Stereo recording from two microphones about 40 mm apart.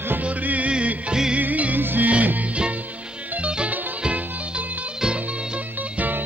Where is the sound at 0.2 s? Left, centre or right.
Right.